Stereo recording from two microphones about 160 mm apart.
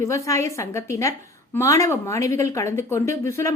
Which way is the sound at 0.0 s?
20° left (ahead or behind).